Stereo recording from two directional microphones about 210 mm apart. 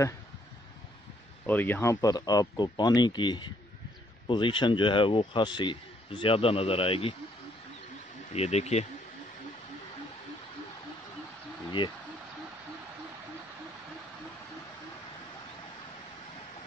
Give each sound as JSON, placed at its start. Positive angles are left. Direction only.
{"t": 1.4, "sound": "speech", "side_deg": 10}
{"t": 8.3, "sound": "speech", "side_deg": 30}